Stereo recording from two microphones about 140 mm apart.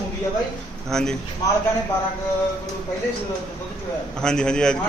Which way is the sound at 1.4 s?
25° left (ahead or behind).